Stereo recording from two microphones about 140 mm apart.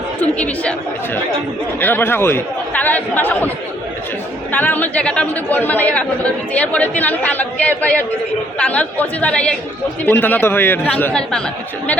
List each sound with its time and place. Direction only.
0.2 s speech: 10° left (ahead or behind)
4.5 s speech: 10° left (ahead or behind)